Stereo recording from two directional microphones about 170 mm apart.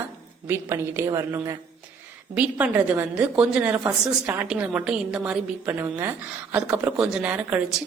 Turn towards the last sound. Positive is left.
turn(degrees=-10)  # may be behind; listen again after turning